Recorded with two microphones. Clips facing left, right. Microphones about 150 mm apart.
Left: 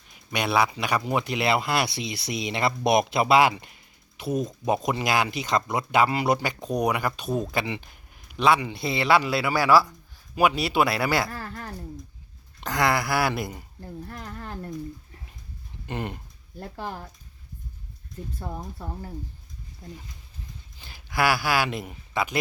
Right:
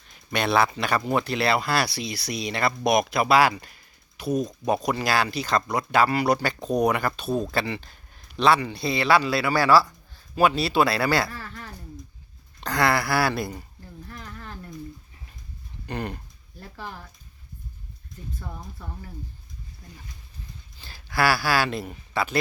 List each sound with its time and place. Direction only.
0.1 s speech: 10° left (ahead or behind)
11.3 s speech: 40° left (ahead or behind)
12.5 s speech: 15° left (ahead or behind)
14.1 s speech: 35° left (ahead or behind)
15.9 s speech: 20° left (ahead or behind)
16.6 s speech: 40° left (ahead or behind)
18.3 s speech: 35° left (ahead or behind)
19.8 s speech: 25° left (ahead or behind)